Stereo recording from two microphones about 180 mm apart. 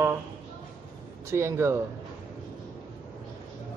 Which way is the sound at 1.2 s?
15° right (ahead or behind).